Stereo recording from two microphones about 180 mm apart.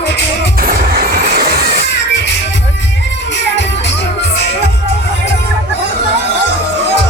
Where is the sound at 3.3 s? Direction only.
80° left.